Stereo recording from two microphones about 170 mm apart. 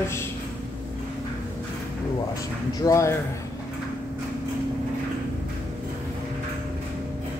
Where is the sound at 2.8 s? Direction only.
15° left (ahead or behind).